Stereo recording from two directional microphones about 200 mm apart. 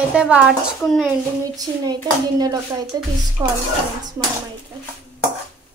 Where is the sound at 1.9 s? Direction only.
20° right (ahead or behind).